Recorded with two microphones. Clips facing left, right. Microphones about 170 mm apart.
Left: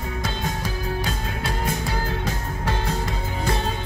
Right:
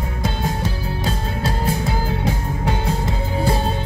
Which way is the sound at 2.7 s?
25° right (ahead or behind).